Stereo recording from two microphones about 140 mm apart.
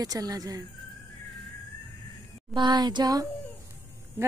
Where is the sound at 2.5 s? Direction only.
30° right (ahead or behind).